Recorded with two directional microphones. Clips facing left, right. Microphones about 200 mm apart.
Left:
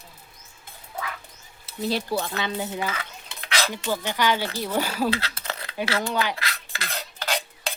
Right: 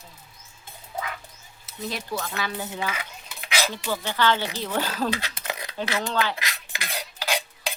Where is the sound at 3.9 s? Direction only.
15° left (ahead or behind).